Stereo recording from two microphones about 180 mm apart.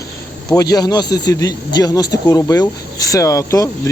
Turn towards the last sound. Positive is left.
turn(degrees=15)  # may be behind; listen again after turning